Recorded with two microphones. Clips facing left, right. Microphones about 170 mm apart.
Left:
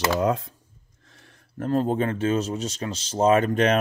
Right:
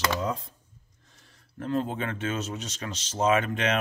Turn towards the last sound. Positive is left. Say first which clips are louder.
# left 6 dB
turn(degrees=40)  # may be behind; listen again after turning